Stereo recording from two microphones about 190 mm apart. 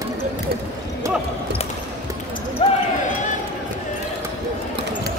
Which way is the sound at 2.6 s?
30° left (ahead or behind).